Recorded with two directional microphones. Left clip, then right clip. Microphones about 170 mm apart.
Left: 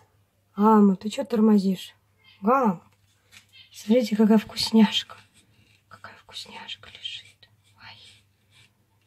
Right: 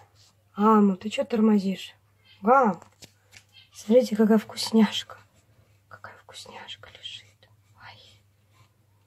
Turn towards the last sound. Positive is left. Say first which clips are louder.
# left 1 dB
turn(degrees=5)  # may be behind; listen again after turning